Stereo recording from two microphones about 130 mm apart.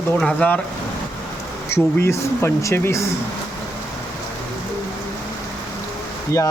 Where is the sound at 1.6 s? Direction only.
20° left (ahead or behind).